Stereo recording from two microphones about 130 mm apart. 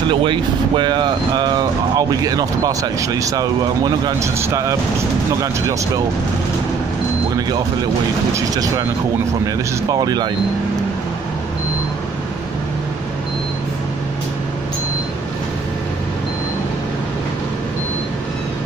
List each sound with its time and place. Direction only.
0.1 s speech: 40° right (ahead or behind); by 4.7 s 25° right (ahead or behind)
8.4 s speech: 25° right (ahead or behind)
9.8 s speech: 30° right (ahead or behind)